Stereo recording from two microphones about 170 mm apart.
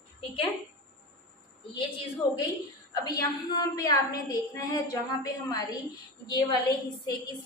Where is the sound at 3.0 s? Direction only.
25° left (ahead or behind).